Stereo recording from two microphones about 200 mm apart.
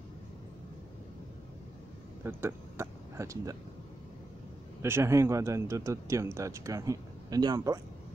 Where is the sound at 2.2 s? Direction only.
10° right (ahead or behind).